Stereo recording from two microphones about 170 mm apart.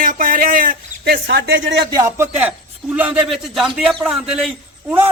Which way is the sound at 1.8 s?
20° right (ahead or behind).